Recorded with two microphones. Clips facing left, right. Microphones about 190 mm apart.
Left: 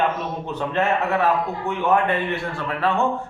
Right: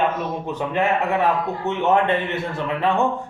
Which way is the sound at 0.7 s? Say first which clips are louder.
Right 1 dB; 15° right (ahead or behind).